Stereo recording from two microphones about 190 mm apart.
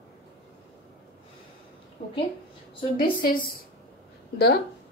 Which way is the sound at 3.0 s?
50° left (ahead or behind).